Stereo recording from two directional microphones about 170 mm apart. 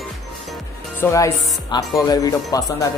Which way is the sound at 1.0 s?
20° left (ahead or behind).